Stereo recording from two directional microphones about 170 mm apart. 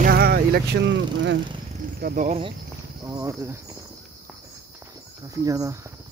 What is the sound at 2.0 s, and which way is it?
Speech, 60° right (ahead or behind).